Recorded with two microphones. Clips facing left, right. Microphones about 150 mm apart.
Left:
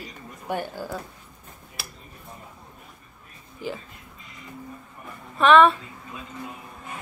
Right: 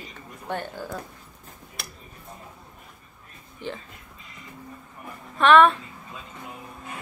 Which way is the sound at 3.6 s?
5° left (ahead or behind).